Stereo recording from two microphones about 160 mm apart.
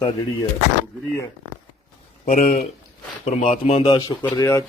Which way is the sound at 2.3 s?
45° left (ahead or behind).